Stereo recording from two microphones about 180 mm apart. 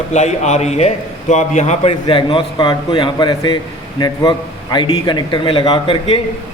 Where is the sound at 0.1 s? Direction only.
40° left (ahead or behind).